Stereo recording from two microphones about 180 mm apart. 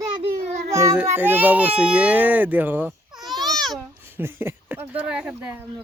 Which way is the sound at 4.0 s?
15° right (ahead or behind).